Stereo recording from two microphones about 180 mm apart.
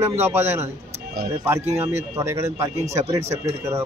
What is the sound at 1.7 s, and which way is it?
A man's voice, 15° right (ahead or behind).